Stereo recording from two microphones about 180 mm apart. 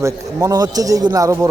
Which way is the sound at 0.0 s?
15° right (ahead or behind).